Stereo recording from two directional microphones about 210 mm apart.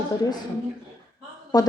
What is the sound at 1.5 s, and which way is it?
Speech, 20° left (ahead or behind).